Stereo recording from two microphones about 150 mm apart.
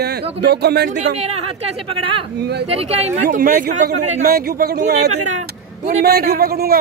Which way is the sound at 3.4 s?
80° right.